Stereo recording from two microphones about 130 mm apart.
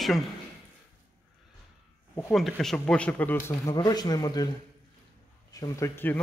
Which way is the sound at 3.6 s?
30° left (ahead or behind).